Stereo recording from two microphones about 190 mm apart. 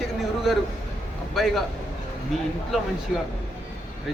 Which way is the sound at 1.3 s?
Centre (ahead or behind).